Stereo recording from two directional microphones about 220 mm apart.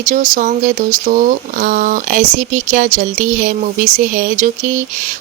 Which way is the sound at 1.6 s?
40° right (ahead or behind).